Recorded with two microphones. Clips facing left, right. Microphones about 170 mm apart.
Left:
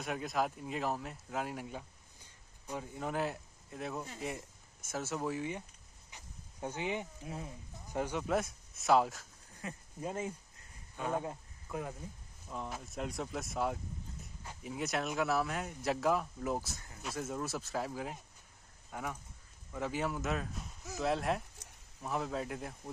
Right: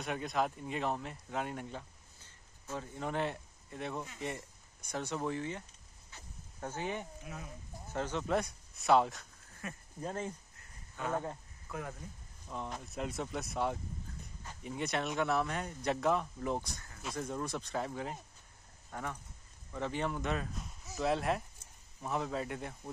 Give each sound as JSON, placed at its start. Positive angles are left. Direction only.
{"t": 0.0, "sound": "speech", "side_deg": 0}
{"t": 6.0, "sound": "a sound", "side_deg": 15}
{"t": 7.2, "sound": "speech", "side_deg": 30}
{"t": 7.9, "sound": "speech", "side_deg": 10}
{"t": 9.6, "sound": "speech", "side_deg": 20}
{"t": 9.9, "sound": "speech", "side_deg": 10}
{"t": 12.4, "sound": "speech", "side_deg": 5}